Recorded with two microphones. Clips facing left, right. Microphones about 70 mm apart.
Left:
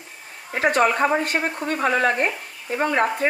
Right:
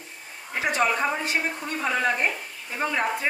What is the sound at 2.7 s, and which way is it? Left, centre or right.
Speech, left.